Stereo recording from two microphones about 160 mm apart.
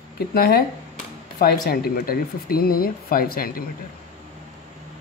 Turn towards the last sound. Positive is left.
turn(degrees=65)  # may be behind; listen again after turning